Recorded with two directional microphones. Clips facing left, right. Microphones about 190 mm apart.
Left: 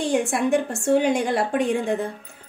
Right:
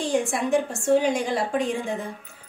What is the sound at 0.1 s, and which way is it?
A woman's voice, 60° left (ahead or behind).